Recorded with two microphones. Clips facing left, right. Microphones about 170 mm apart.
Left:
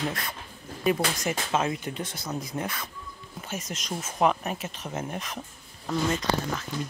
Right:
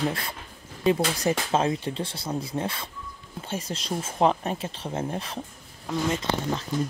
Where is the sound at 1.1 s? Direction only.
30° right (ahead or behind).